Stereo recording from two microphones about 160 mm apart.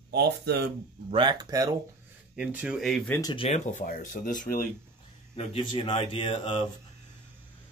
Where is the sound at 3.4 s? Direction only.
45° left (ahead or behind); by 4.6 s 60° left (ahead or behind).